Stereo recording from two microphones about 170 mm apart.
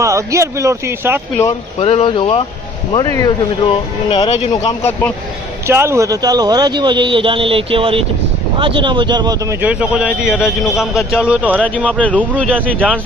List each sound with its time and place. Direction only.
0.0 s speech: 15° right (ahead or behind)
1.8 s speech: 35° left (ahead or behind)
4.5 s speech: 20° left (ahead or behind)
5.6 s speech: 15° right (ahead or behind)
11.9 s speech: 5° left (ahead or behind)